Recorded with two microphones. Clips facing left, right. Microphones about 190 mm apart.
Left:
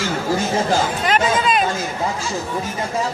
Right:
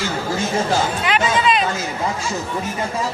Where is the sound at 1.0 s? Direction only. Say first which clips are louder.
Even; 45° left (ahead or behind).